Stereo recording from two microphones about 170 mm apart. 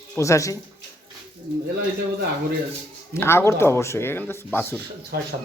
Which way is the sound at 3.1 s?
15° left (ahead or behind).